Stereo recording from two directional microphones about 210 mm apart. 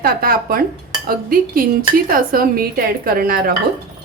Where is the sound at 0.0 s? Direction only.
45° right (ahead or behind).